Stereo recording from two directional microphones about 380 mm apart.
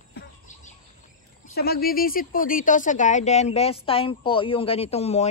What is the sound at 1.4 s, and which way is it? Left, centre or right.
Speech, left.